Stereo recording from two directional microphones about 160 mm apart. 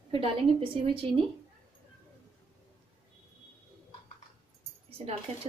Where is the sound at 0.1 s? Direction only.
35° right (ahead or behind).